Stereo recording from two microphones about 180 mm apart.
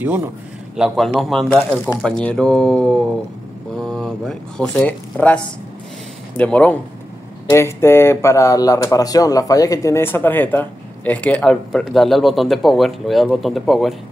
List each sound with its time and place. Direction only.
0.0 s a man's voice: 10° right (ahead or behind)